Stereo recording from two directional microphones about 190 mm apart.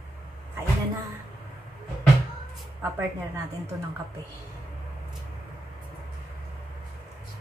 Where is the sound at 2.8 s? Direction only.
15° right (ahead or behind).